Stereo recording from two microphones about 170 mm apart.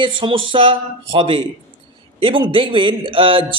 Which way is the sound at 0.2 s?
30° right (ahead or behind).